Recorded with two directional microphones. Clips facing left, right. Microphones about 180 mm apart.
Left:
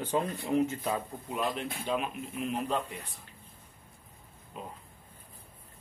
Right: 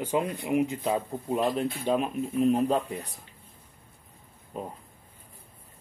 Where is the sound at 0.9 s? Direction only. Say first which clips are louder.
Right 6 dB; 25° right (ahead or behind).